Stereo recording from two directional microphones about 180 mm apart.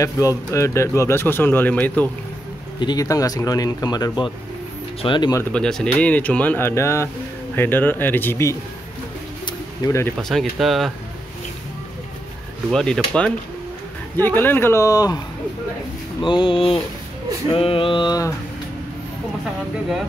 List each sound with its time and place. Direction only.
0.5 s speech: 15° left (ahead or behind)
2.8 s speech: 20° left (ahead or behind)
5.4 s speech: 5° left (ahead or behind)
9.8 s speech: 15° left (ahead or behind)
10.2 s speech: centre (ahead or behind)
12.7 s speech: 5° left (ahead or behind); by 18.3 s 20° left (ahead or behind)